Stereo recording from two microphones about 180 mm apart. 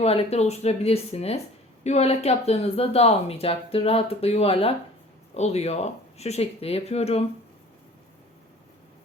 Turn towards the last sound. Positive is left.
turn(degrees=35)  # may be behind; listen again after turning